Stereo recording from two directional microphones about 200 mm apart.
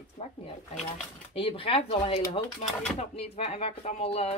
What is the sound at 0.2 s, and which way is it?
Speech, 30° left (ahead or behind).